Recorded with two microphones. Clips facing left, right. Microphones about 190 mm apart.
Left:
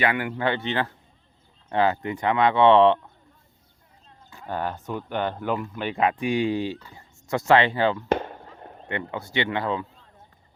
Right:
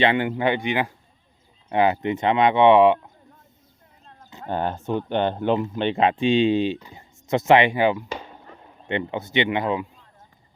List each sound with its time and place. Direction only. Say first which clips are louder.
0.0 s speech: right 4 dB; 25° right (ahead or behind)
4.3 s speech: right 3 dB; 20° right (ahead or behind)
8.1 s a sound: left 9 dB; 55° left (ahead or behind)
8.9 s speech: right 5 dB; 20° right (ahead or behind)